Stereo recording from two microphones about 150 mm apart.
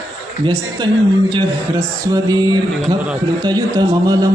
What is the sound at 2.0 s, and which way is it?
Mantra, 25° right (ahead or behind).